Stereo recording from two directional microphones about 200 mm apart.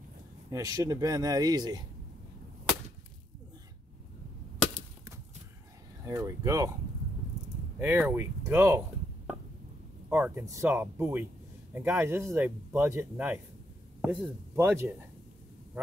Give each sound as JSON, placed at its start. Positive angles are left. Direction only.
{"t": 0.5, "sound": "speech", "side_deg": -20}
{"t": 6.0, "sound": "speech", "side_deg": -15}
{"t": 7.8, "sound": "speech", "side_deg": -10}
{"t": 10.0, "sound": "speech", "side_deg": -5}